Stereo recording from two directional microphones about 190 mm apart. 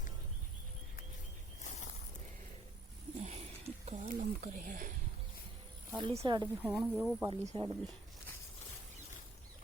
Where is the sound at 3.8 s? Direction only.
40° right (ahead or behind).